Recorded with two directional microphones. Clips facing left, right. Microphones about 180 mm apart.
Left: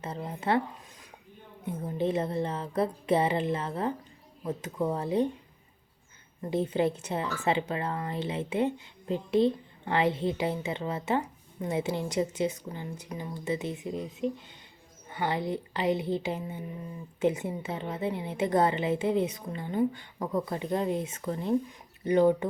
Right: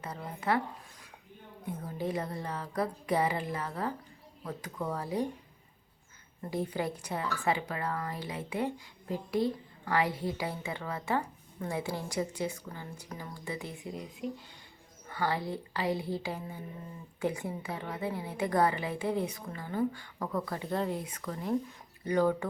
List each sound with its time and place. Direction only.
0.0 s a woman's voice: 25° left (ahead or behind)
1.6 s a woman's voice: 25° left (ahead or behind)
6.5 s a woman's voice: 25° left (ahead or behind)